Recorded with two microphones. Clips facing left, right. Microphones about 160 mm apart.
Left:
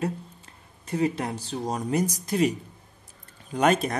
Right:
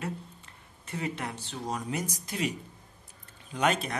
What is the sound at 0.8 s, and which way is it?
Speech, 35° left (ahead or behind).